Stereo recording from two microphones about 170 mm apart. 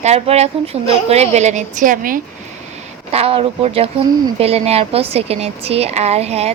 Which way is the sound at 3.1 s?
35° right (ahead or behind).